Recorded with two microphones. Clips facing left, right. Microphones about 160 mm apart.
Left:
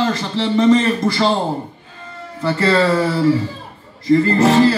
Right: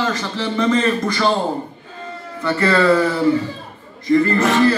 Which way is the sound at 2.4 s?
30° left (ahead or behind).